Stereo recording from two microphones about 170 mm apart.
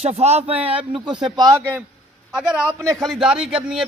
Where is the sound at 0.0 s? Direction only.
40° right (ahead or behind).